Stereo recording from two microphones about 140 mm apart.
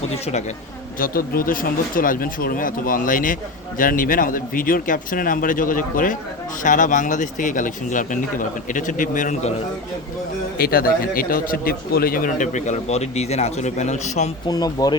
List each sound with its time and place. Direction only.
0.1 s a woman's voice: 50° left (ahead or behind)
0.9 s speech: 90° left; by 9.5 s 70° left (ahead or behind)
10.6 s speech: 90° left; by 14.3 s 55° left (ahead or behind)
14.4 s speech: 30° left (ahead or behind)